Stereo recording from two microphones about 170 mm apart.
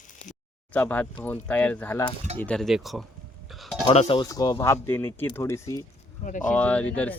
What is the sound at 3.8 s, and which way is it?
Speech, 35° left (ahead or behind).